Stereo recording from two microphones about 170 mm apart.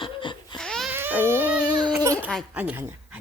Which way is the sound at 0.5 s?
5° left (ahead or behind).